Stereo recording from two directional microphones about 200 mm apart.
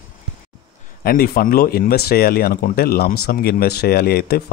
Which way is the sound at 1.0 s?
50° left (ahead or behind).